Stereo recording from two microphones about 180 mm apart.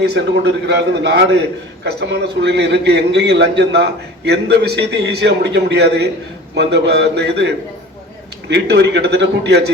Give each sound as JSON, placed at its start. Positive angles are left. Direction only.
{"t": 0.0, "sound": "a man's voice", "side_deg": -65}